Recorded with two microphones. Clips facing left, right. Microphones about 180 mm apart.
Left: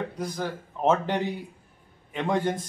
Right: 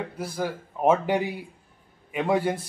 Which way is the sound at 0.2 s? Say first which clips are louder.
Right 1 dB; 10° right (ahead or behind).